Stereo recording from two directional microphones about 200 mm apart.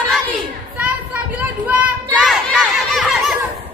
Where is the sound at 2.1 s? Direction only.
5° left (ahead or behind).